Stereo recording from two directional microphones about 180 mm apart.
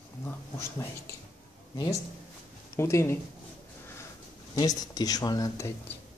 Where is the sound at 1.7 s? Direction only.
20° left (ahead or behind).